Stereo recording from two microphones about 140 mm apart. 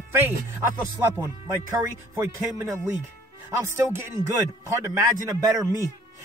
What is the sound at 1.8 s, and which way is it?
Speech, 20° right (ahead or behind).